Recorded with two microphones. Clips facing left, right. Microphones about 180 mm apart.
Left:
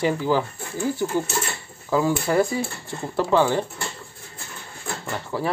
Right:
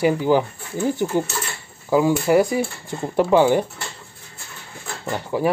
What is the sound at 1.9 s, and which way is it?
Speech, 15° right (ahead or behind).